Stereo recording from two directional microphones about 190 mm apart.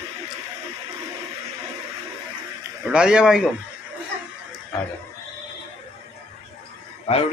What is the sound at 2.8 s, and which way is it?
Speech, 5° right (ahead or behind).